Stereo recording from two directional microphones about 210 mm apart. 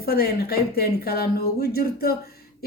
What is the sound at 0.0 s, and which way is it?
Speech, 45° left (ahead or behind).